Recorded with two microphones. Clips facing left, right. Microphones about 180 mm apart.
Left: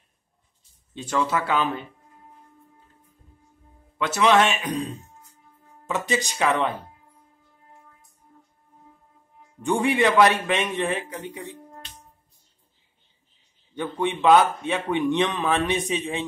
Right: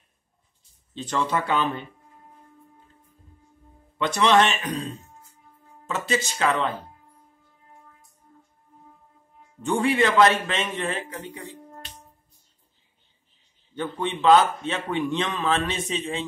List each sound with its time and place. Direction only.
0.9 s speech: 5° left (ahead or behind)
4.0 s a man's voice: 5° left (ahead or behind)
9.6 s a man's voice: 15° left (ahead or behind)
13.7 s a man's voice: 15° left (ahead or behind)